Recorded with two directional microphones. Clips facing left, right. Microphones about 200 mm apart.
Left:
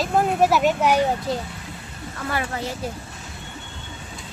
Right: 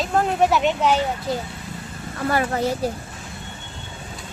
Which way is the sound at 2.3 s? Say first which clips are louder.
Right 5 dB; 45° right (ahead or behind).